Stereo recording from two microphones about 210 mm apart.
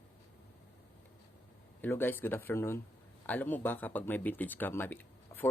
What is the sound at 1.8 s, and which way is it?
Speech, 10° left (ahead or behind).